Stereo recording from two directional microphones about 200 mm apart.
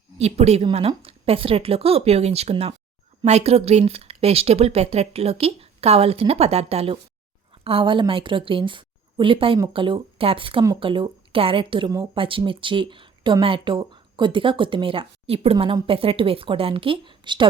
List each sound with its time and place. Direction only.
0.2 s a woman's voice: 30° right (ahead or behind)